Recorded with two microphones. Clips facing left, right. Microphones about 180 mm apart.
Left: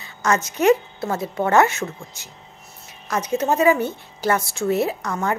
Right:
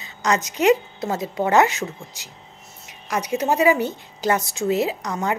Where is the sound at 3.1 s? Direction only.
15° right (ahead or behind).